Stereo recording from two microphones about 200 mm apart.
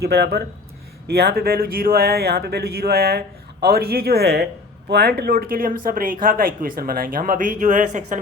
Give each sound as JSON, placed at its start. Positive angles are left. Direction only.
{"t": 0.0, "sound": "speech", "side_deg": -55}